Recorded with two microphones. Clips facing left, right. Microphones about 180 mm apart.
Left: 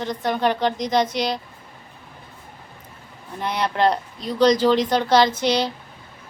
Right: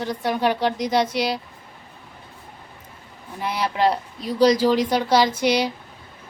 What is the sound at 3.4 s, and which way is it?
A woman's voice, 5° right (ahead or behind).